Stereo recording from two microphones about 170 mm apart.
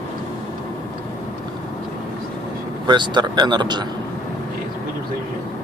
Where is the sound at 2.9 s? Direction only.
25° right (ahead or behind).